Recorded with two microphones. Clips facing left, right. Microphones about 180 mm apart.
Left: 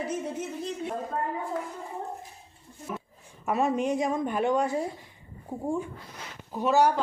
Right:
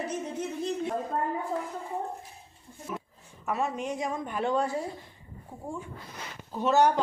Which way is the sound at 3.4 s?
20° left (ahead or behind).